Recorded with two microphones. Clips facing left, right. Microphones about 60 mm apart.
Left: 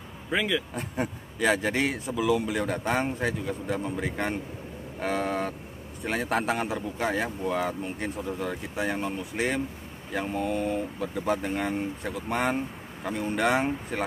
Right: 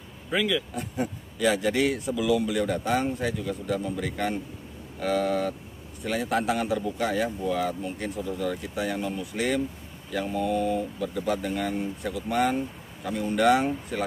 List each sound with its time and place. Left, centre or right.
0.3 s speech: left
0.7 s speech: left